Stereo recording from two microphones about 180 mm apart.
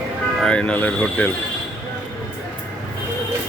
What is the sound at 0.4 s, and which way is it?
Speech, 5° left (ahead or behind).